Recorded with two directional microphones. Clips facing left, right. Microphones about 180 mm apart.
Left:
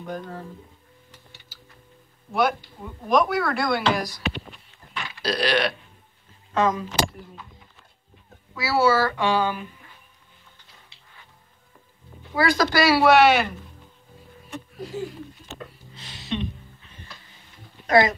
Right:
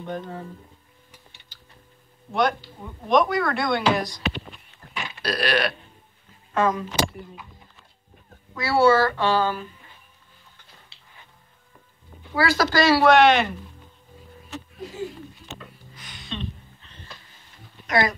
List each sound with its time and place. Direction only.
0.2 s speech: 5° right (ahead or behind)
2.3 s speech: centre (ahead or behind)
4.9 s a sound: 20° right (ahead or behind)
5.2 s speech: 5° right (ahead or behind)
6.5 s speech: 15° left (ahead or behind)
8.3 s speech: 5° left (ahead or behind)
12.4 s speech: 20° left (ahead or behind)
15.9 s a sound: 25° left (ahead or behind)
16.3 s a sound: 10° left (ahead or behind)
17.8 s speech: 25° left (ahead or behind)